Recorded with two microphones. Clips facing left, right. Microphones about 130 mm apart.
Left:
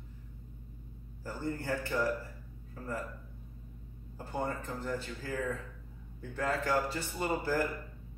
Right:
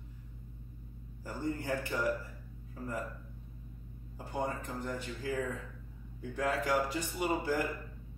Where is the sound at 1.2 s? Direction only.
15° right (ahead or behind).